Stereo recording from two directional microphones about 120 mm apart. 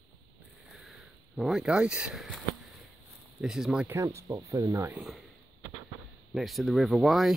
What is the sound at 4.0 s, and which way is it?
Speech, 25° right (ahead or behind).